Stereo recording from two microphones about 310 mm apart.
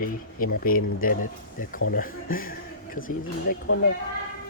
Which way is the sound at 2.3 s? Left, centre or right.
Left.